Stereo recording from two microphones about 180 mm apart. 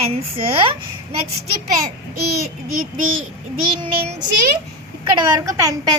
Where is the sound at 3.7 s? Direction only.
30° right (ahead or behind).